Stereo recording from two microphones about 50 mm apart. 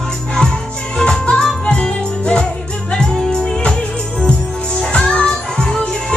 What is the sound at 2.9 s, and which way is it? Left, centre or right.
Music, centre.